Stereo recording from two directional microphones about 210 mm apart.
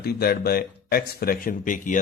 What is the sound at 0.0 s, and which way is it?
Speech, 45° left (ahead or behind).